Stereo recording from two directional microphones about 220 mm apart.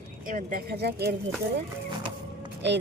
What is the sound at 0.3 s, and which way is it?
Speech, 40° right (ahead or behind).